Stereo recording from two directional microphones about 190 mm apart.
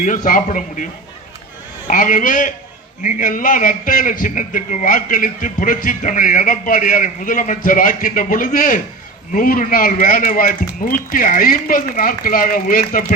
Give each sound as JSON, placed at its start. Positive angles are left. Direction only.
{"t": 0.0, "sound": "a man's voice", "side_deg": 45}
{"t": 1.9, "sound": "a man's voice", "side_deg": 45}